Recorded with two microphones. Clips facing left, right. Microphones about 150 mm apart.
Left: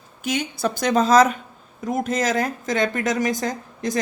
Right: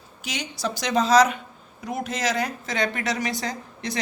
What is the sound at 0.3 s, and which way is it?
Speech, 50° left (ahead or behind).